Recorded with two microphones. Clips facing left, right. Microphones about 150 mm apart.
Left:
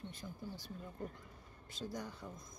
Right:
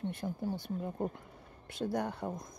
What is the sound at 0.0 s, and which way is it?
Speech, 60° right (ahead or behind).